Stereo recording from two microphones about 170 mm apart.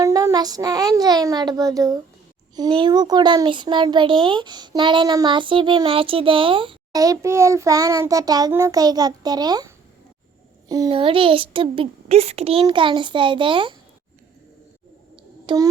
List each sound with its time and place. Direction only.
0.0 s a child's voice: 20° right (ahead or behind)
7.0 s a child's voice: 20° right (ahead or behind)
10.9 s a child's voice: 30° right (ahead or behind)
15.1 s a sound: 25° right (ahead or behind)